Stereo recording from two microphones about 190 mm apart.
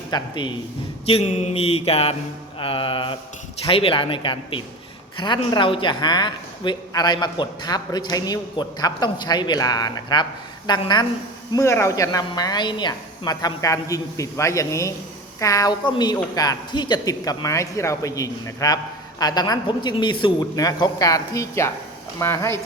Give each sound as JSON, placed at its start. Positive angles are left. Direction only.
{"t": 0.1, "sound": "a woman's voice", "side_deg": 25}
{"t": 1.0, "sound": "mantra", "side_deg": 35}
{"t": 2.6, "sound": "a woman's voice", "side_deg": 30}